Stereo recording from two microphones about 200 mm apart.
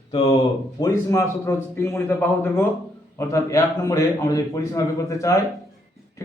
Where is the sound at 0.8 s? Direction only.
15° left (ahead or behind).